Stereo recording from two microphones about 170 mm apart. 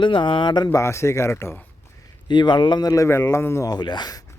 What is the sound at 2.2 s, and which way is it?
A man's voice, 25° left (ahead or behind).